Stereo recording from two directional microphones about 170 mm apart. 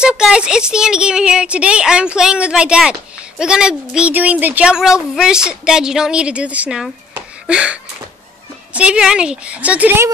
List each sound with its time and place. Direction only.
0.0 s a woman's voice: 5° right (ahead or behind)